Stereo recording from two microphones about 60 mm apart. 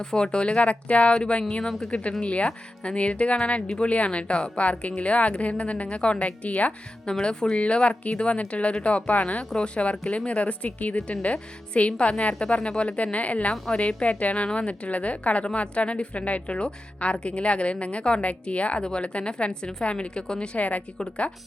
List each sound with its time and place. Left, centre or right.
0.0 s a woman's voice: centre
21.0 s speech: centre